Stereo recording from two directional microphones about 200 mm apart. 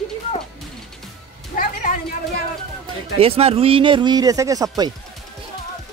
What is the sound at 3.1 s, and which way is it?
Speech, 30° right (ahead or behind).